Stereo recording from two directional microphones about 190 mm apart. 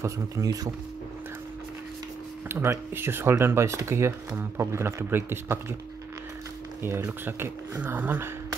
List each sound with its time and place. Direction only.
0.0 s speech: 15° right (ahead or behind)
2.4 s speech: 15° right (ahead or behind)
6.8 s speech: 10° right (ahead or behind)